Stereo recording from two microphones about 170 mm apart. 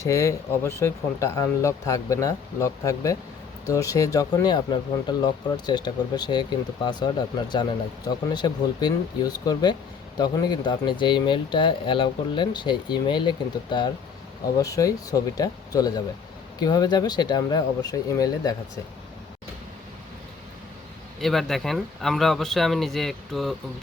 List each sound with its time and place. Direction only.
0.0 s speech: 15° left (ahead or behind)
21.2 s speech: centre (ahead or behind)